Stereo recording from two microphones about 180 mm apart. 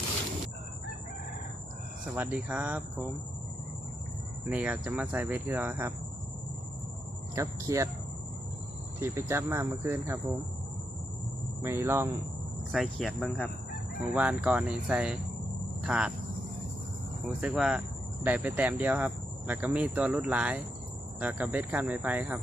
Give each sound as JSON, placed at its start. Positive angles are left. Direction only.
{"t": 2.1, "sound": "speech", "side_deg": -10}
{"t": 4.4, "sound": "speech", "side_deg": -10}
{"t": 7.3, "sound": "speech", "side_deg": -15}
{"t": 9.0, "sound": "speech", "side_deg": -15}
{"t": 11.6, "sound": "speech", "side_deg": -15}
{"t": 12.7, "sound": "speech", "side_deg": 0}
{"t": 17.4, "sound": "speech", "side_deg": -5}